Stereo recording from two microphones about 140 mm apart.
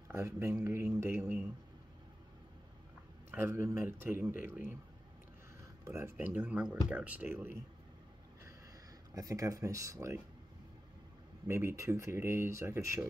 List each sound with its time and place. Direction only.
0.1 s speech: 20° right (ahead or behind)
3.3 s a man's voice: 15° right (ahead or behind)
5.9 s a man's voice: 20° right (ahead or behind)
9.1 s speech: 25° right (ahead or behind)
11.4 s speech: 20° right (ahead or behind)